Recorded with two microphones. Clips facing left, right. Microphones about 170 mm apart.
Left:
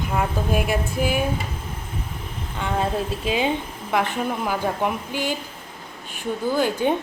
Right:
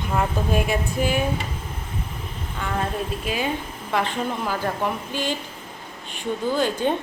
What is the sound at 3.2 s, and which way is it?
Speech, 25° left (ahead or behind).